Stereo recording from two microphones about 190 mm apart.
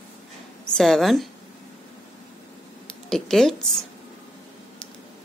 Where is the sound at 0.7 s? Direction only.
Centre (ahead or behind).